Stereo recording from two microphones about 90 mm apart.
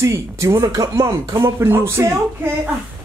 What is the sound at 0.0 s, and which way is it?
Speech, 35° right (ahead or behind).